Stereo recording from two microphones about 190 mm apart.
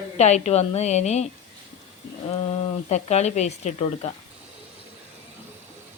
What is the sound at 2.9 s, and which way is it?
Speech, 35° left (ahead or behind).